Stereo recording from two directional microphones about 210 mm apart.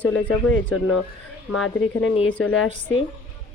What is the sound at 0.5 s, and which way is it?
A woman's voice, 90° left.